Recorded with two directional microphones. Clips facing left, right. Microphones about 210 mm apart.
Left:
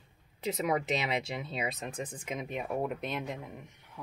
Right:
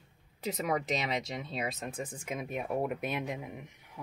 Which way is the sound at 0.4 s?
Centre (ahead or behind).